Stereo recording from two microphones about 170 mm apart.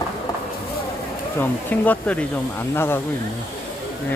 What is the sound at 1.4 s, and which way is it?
Speech, 10° left (ahead or behind).